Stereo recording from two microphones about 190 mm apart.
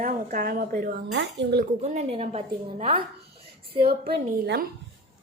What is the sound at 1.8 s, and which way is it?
Speech, 35° right (ahead or behind).